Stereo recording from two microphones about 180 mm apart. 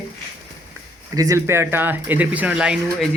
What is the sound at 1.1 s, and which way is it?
Speech, 20° right (ahead or behind).